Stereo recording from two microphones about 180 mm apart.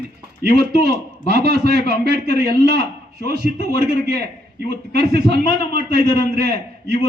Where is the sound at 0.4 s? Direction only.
60° right (ahead or behind).